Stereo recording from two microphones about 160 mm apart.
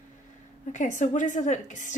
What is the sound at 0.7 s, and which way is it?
A woman's voice, 50° left (ahead or behind).